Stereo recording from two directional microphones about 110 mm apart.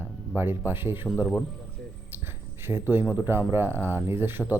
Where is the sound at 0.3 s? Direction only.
20° right (ahead or behind).